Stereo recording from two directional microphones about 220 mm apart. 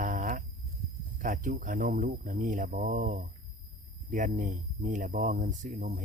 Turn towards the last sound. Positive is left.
turn(degrees=-40)  # may be behind; listen again after turning